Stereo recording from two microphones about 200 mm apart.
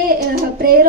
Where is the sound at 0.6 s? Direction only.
45° right (ahead or behind).